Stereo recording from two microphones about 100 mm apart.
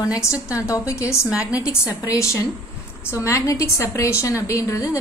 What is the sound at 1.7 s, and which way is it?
A woman's voice, 30° left (ahead or behind).